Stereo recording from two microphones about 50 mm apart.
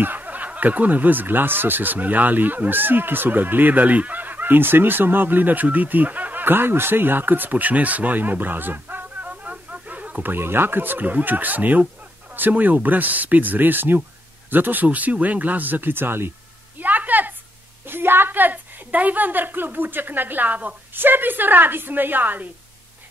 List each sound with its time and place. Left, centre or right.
0.0 s speech: right
16.8 s a sound: right
17.8 s speech: right